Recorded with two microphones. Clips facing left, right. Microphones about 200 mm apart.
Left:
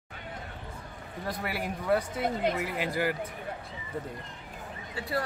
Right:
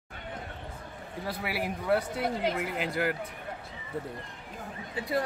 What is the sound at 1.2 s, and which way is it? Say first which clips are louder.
Speech: even; 5° right (ahead or behind).